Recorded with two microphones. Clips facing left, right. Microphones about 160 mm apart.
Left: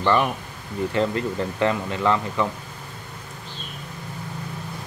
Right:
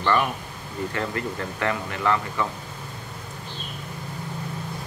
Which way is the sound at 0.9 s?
20° left (ahead or behind).